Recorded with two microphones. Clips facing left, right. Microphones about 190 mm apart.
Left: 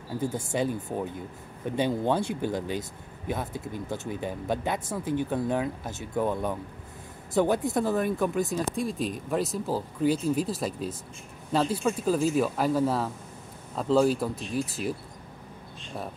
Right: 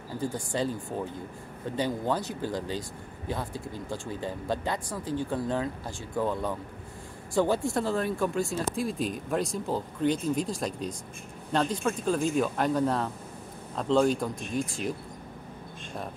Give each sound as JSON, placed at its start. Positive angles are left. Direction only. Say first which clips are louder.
{"t": 0.2, "sound": "speech", "louder": "left 1 dB", "side_deg": 25}
{"t": 8.5, "sound": "speech", "louder": "left 1 dB", "side_deg": 0}